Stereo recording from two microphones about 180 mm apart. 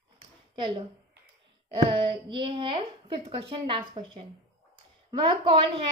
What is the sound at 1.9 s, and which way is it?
A woman's voice, 30° right (ahead or behind).